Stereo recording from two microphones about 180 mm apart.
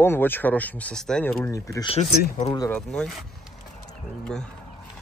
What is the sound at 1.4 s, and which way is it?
Speech, 15° left (ahead or behind).